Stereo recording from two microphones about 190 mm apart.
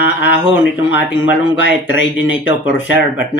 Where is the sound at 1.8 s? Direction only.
80° left.